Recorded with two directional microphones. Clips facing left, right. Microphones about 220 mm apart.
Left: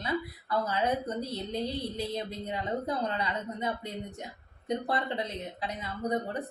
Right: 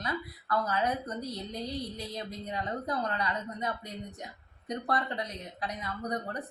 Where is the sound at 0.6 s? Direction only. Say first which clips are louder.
Left 2 dB; 25° left (ahead or behind).